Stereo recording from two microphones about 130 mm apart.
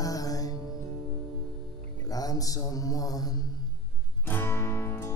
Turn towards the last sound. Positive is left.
turn(degrees=20)  # may be behind; listen again after turning